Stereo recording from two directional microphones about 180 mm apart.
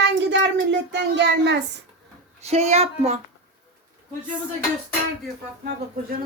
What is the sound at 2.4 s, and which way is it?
Speech, 35° right (ahead or behind).